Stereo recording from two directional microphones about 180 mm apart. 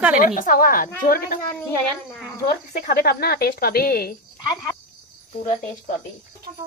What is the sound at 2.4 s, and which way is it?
Speech, 50° left (ahead or behind).